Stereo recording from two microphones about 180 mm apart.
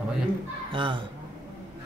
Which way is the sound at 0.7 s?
25° right (ahead or behind).